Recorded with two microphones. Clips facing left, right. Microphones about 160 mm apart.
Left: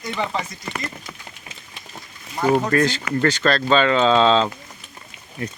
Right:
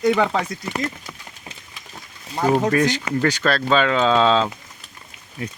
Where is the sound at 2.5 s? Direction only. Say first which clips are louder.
Even; 15° right (ahead or behind).